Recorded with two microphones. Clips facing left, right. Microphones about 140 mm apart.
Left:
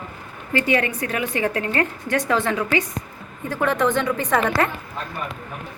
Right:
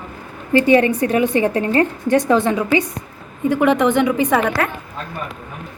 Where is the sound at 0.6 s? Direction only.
25° right (ahead or behind).